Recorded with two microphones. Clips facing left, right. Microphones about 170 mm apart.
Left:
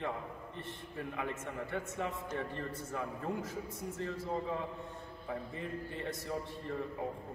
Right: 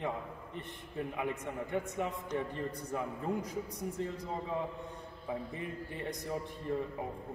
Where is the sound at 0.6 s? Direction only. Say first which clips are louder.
Right 4 dB; 15° right (ahead or behind).